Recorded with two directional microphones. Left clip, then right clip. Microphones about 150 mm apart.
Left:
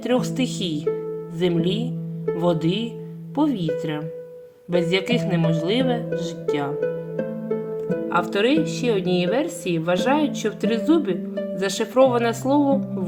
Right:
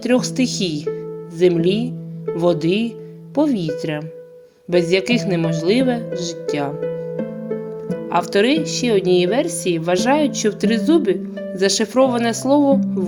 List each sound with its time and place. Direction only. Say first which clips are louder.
0.0 s speech: right 4 dB; 40° right (ahead or behind)
6.7 s harp: right 1 dB; centre (ahead or behind)
8.0 s speech: right 5 dB; 55° right (ahead or behind)